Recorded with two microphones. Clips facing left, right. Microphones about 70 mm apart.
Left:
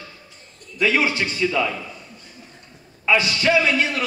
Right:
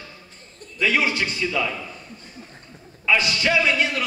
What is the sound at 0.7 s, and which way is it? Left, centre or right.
Speech, left.